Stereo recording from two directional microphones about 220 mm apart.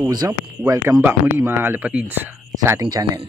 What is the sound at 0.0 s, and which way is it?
Speech, 15° right (ahead or behind).